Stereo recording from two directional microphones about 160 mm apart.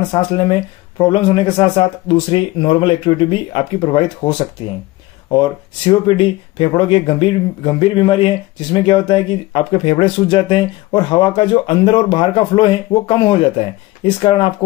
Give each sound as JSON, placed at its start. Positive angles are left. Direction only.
{"t": 0.1, "sound": "speech", "side_deg": 35}
{"t": 5.3, "sound": "speech", "side_deg": 30}